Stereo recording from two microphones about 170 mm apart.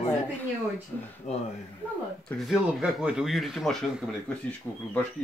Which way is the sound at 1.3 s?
40° left (ahead or behind).